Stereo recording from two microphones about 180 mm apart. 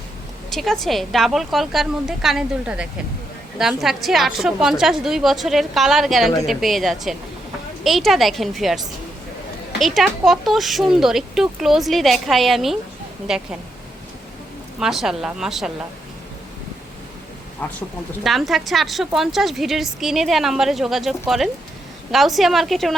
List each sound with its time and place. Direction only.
0.5 s a woman's voice: centre (ahead or behind)
14.8 s a woman's voice: centre (ahead or behind)
17.6 s a woman's voice: 5° left (ahead or behind)